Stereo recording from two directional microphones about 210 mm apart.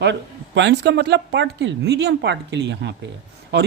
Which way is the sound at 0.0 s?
55° right (ahead or behind).